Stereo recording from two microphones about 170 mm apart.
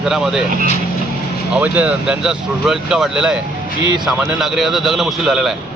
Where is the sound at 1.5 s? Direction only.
10° right (ahead or behind).